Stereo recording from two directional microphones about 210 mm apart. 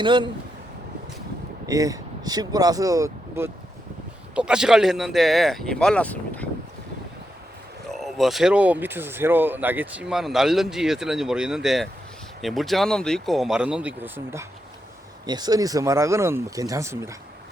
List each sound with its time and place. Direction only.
0.0 s speech: 25° right (ahead or behind)
1.6 s speech: 15° right (ahead or behind); by 6.5 s 5° left (ahead or behind)
7.9 s speech: centre (ahead or behind)